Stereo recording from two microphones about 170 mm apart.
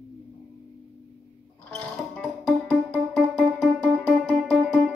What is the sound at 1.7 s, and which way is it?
Music, 5° left (ahead or behind).